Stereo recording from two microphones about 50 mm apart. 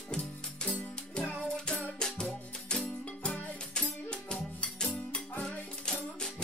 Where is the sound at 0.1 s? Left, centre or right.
Centre.